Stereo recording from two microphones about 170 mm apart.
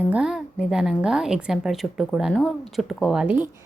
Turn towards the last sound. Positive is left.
turn(degrees=-10)  # may be behind; listen again after turning